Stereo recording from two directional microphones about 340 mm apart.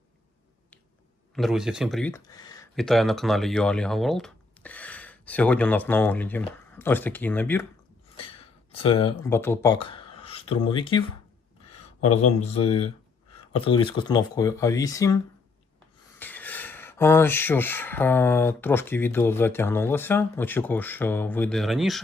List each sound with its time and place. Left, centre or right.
1.4 s speech: centre
2.7 s speech: centre
8.7 s speech: centre
11.9 s speech: left
12.4 s speech: centre